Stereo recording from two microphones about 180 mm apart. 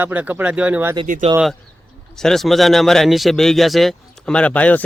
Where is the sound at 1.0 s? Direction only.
45° right (ahead or behind).